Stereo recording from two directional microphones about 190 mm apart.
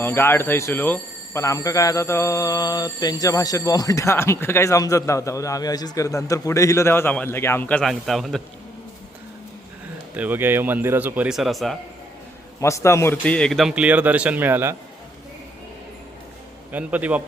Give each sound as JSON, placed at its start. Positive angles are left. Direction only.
{"t": 0.0, "sound": "speech", "side_deg": 10}
{"t": 10.2, "sound": "a man's voice", "side_deg": -10}
{"t": 12.5, "sound": "a man's voice", "side_deg": 15}
{"t": 16.7, "sound": "a man's voice", "side_deg": -10}